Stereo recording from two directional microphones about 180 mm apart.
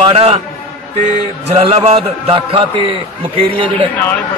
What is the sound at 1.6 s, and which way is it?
A man's voice, 30° right (ahead or behind).